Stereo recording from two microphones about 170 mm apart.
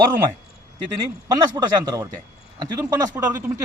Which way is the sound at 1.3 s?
25° right (ahead or behind).